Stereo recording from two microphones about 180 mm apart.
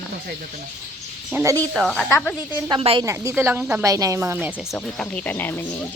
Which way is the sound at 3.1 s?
15° right (ahead or behind).